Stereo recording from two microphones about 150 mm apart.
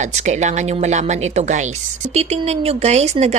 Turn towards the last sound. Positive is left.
turn(degrees=-45)  # may be behind; listen again after turning